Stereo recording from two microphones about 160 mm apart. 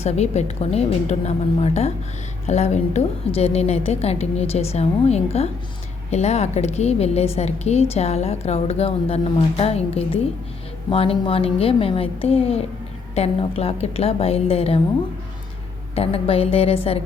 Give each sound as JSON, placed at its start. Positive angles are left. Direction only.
{"t": 0.0, "sound": "a woman's voice", "side_deg": 45}
{"t": 16.0, "sound": "a woman's voice", "side_deg": 40}